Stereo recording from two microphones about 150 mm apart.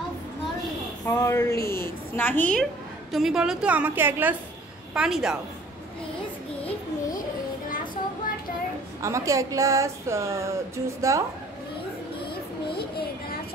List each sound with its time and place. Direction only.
1.0 s a woman's voice: 20° left (ahead or behind); by 5.4 s 5° right (ahead or behind)
9.0 s speech: 20° right (ahead or behind)
12.7 s child singing: 90° left